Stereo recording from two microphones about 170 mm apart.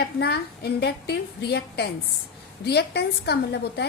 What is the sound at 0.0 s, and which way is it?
A woman's voice, 70° left (ahead or behind).